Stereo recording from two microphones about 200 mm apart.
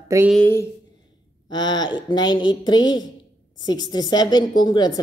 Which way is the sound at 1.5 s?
20° left (ahead or behind).